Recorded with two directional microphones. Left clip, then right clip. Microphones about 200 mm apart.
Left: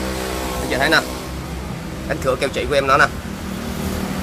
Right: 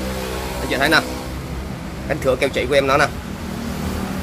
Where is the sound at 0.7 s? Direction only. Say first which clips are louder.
Even; 5° right (ahead or behind).